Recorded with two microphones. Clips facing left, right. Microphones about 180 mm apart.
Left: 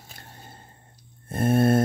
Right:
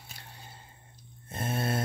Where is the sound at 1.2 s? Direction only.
55° left (ahead or behind).